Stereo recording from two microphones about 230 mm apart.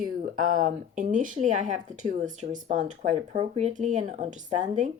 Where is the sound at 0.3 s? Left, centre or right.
Right.